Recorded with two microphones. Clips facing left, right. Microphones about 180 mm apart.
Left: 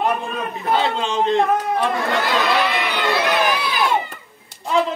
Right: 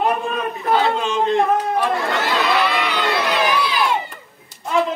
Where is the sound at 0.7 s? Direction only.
25° left (ahead or behind).